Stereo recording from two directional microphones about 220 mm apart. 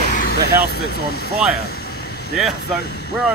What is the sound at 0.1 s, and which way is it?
Speech, 40° left (ahead or behind).